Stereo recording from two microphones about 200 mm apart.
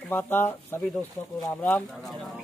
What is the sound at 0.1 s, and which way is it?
Speech, 10° left (ahead or behind).